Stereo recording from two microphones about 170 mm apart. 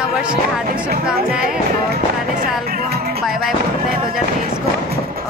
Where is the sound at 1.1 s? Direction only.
60° right (ahead or behind).